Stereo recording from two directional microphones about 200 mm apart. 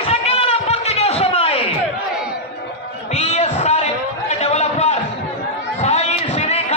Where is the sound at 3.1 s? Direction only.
35° left (ahead or behind).